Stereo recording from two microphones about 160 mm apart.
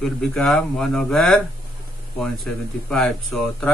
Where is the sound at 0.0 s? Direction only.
5° left (ahead or behind).